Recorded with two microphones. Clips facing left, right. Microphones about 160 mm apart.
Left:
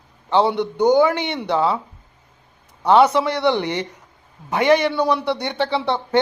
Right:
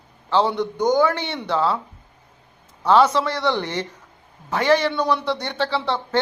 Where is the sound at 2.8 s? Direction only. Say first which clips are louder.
Left 2 dB; 15° left (ahead or behind).